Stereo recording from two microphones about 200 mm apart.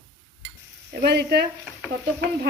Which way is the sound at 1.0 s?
55° right (ahead or behind).